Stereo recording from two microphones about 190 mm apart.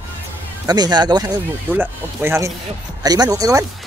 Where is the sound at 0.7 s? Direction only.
20° right (ahead or behind).